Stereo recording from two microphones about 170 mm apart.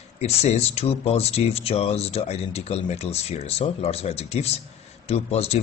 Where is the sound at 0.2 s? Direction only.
40° left (ahead or behind).